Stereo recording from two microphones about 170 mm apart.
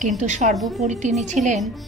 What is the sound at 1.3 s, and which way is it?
Speech, 45° right (ahead or behind).